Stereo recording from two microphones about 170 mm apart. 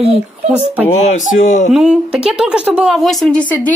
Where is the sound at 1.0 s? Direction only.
50° left (ahead or behind).